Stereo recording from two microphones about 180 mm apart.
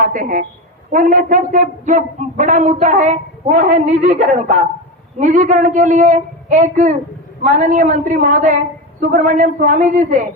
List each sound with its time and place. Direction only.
0.0 s a man's voice: 50° right (ahead or behind)